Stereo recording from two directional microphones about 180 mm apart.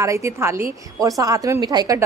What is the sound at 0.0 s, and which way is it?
Speech, 15° right (ahead or behind).